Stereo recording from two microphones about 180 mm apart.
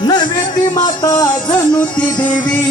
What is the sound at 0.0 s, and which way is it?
Music, 25° left (ahead or behind).